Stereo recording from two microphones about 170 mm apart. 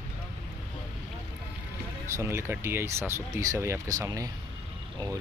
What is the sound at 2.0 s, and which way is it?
Speech, 15° right (ahead or behind).